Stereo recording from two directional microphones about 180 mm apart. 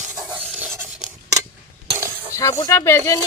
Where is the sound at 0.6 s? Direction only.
10° right (ahead or behind).